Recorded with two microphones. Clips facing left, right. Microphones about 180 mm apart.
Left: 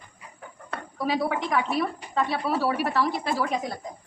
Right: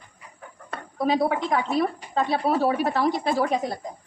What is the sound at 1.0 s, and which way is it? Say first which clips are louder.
A woman's voice: right 4 dB; 30° right (ahead or behind).